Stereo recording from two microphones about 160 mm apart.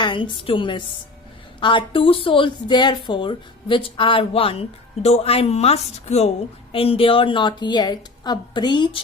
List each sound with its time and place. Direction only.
0.0 s a woman's voice: 30° left (ahead or behind)